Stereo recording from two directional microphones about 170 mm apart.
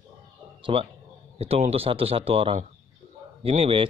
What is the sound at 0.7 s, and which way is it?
Speech, 30° right (ahead or behind).